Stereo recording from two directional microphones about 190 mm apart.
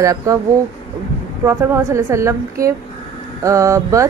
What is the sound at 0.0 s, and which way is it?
Speech, 15° right (ahead or behind).